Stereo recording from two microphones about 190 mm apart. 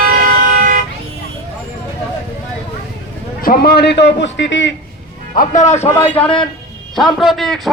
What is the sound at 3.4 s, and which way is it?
A man's voice, 50° left (ahead or behind).